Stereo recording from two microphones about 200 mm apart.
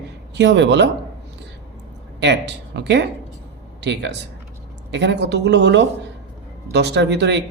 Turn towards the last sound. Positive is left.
turn(degrees=-60)  # may be behind; listen again after turning